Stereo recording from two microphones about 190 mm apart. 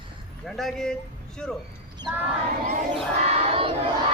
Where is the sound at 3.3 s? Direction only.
30° right (ahead or behind).